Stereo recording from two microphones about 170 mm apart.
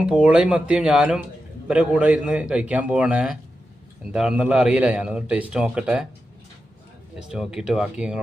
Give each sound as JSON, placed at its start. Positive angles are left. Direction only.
{"t": 0.0, "sound": "a man's voice", "side_deg": -5}
{"t": 7.2, "sound": "a man's voice", "side_deg": -5}